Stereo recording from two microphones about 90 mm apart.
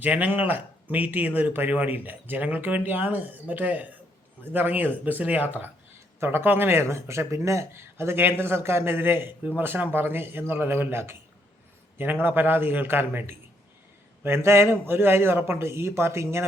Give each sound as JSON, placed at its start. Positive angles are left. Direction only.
{"t": 0.0, "sound": "speech", "side_deg": -20}
{"t": 12.2, "sound": "speech", "side_deg": -25}